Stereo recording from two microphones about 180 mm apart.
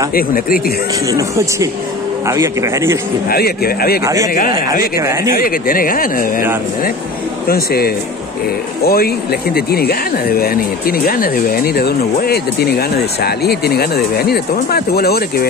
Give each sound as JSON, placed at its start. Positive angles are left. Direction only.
{"t": 0.1, "sound": "speech", "side_deg": 55}
{"t": 1.0, "sound": "speech", "side_deg": -20}
{"t": 3.3, "sound": "speech", "side_deg": 55}
{"t": 4.0, "sound": "speech", "side_deg": -20}
{"t": 5.3, "sound": "speech", "side_deg": 55}
{"t": 7.4, "sound": "speech", "side_deg": 60}